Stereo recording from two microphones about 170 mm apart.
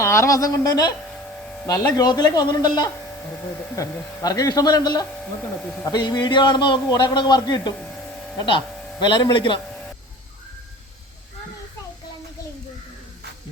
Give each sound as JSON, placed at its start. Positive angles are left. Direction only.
{"t": 0.0, "sound": "a man's voice", "side_deg": 15}